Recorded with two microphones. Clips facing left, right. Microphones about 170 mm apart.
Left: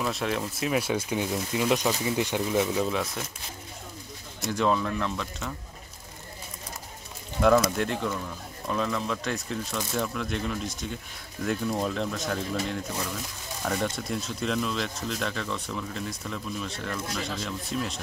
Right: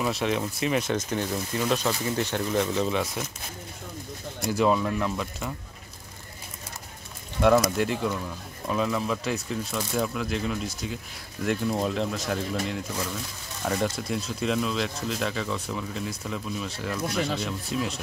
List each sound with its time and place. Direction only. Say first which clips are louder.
0.0 s speech: right 2 dB; centre (ahead or behind)
4.5 s speech: right 2 dB; 5° right (ahead or behind)
7.7 s speech: right 2 dB; centre (ahead or behind)